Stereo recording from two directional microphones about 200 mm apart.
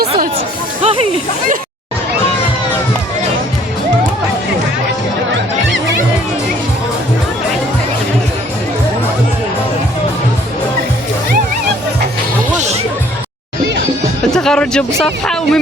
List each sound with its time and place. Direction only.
0.8 s hiss: 30° right (ahead or behind)
14.3 s speech: 5° left (ahead or behind)